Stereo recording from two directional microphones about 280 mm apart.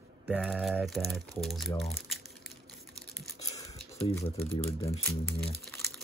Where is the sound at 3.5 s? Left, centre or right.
Centre.